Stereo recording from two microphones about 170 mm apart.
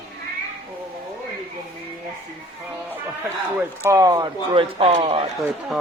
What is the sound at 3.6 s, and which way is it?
Speech, 15° right (ahead or behind).